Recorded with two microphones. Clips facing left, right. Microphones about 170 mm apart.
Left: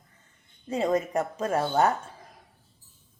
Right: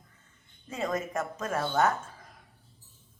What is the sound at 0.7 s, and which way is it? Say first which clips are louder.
A woman's voice: left 6 dB; 35° left (ahead or behind).